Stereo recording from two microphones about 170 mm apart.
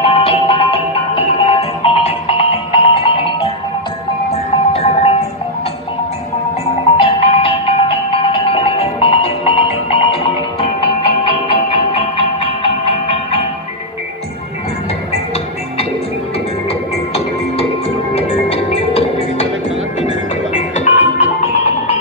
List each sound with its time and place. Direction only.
0.0 s music: 35° left (ahead or behind)
7.0 s music: 35° left (ahead or behind)
18.1 s music: 35° left (ahead or behind)
20.5 s music: 45° left (ahead or behind)